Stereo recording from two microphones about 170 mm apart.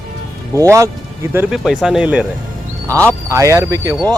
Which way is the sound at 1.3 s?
5° right (ahead or behind).